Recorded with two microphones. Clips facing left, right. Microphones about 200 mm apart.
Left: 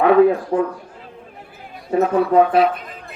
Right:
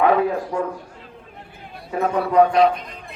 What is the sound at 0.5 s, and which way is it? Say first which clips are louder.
Speech: left 5 dB; 45° left (ahead or behind).